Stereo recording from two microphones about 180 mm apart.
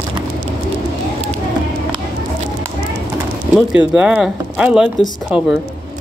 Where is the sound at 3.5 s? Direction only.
5° right (ahead or behind).